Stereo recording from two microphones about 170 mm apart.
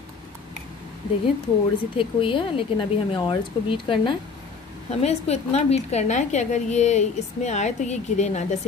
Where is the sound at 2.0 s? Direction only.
30° left (ahead or behind).